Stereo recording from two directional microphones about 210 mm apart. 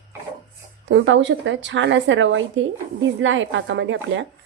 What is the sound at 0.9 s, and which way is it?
Speech, 60° right (ahead or behind).